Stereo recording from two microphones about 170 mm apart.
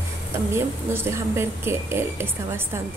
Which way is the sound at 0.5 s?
15° right (ahead or behind).